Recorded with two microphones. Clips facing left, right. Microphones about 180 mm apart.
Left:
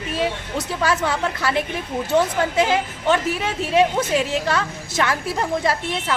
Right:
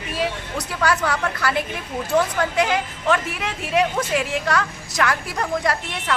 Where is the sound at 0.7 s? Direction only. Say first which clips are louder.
Even; 25° left (ahead or behind).